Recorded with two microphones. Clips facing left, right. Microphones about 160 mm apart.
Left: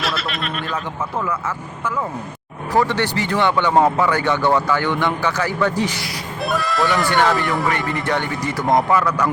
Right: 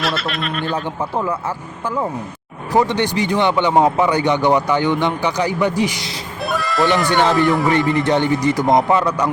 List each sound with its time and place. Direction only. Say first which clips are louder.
0.0 s a sound: right 3 dB; centre (ahead or behind)
1.2 s speech: right 1 dB; 30° right (ahead or behind)
2.7 s speech: right 2 dB; 15° right (ahead or behind)
6.4 s speech: right 2 dB; centre (ahead or behind)
8.0 s speech: right 6 dB; 20° right (ahead or behind)